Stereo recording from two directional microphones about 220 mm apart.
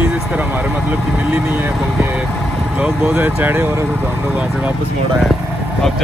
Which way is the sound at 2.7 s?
5° right (ahead or behind).